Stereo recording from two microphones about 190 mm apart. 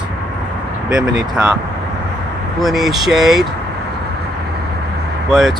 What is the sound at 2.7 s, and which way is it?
Speech, centre (ahead or behind).